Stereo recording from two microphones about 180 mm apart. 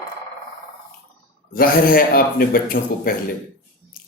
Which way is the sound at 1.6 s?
55° left (ahead or behind).